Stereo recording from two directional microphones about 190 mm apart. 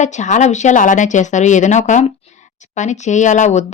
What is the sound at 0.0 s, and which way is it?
Speech, 40° left (ahead or behind).